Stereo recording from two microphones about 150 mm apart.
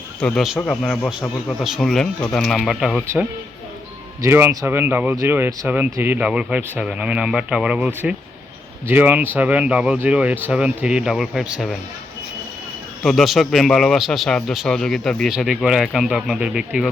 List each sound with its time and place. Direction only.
0.2 s a man's voice: 5° left (ahead or behind)
4.2 s speech: 15° right (ahead or behind)
13.0 s a man's voice: centre (ahead or behind)